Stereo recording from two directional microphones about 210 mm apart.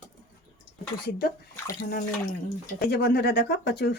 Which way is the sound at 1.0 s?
45° left (ahead or behind).